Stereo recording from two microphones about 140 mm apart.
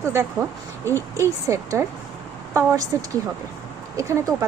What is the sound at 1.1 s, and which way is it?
Speech, 20° right (ahead or behind).